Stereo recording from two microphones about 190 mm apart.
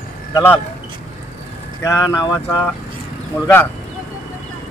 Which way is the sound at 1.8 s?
15° left (ahead or behind).